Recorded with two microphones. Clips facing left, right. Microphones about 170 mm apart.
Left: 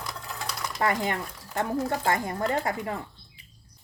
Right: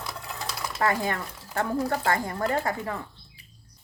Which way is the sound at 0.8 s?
20° left (ahead or behind).